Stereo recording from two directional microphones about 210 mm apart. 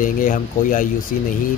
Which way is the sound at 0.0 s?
40° left (ahead or behind).